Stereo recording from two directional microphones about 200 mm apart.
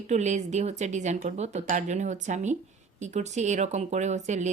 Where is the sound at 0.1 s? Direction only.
35° right (ahead or behind).